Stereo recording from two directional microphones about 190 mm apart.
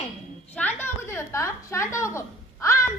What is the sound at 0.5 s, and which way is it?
A woman's voice, 10° left (ahead or behind).